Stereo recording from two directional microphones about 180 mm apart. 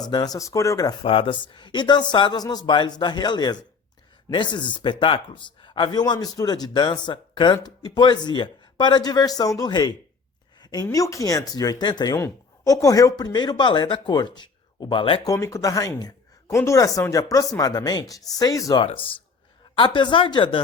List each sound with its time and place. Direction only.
0.1 s speech: 20° left (ahead or behind)
1.0 s speech: 30° left (ahead or behind)
10.6 s a sound: 25° left (ahead or behind)
10.8 s speech: 15° left (ahead or behind)